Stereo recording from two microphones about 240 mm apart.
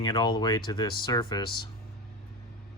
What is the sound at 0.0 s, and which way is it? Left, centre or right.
Speech, centre.